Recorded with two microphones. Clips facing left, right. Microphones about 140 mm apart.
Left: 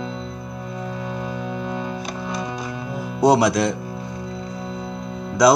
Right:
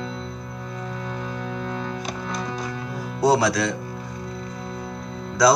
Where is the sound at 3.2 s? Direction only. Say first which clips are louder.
Left 3 dB; 20° left (ahead or behind).